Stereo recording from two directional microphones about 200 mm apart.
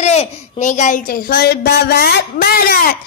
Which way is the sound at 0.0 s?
35° left (ahead or behind).